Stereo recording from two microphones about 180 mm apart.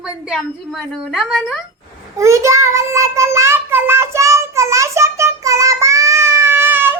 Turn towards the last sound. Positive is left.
turn(degrees=-10)  # may be behind; listen again after turning